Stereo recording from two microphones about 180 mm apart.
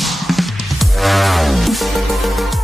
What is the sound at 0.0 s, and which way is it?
Music, centre (ahead or behind).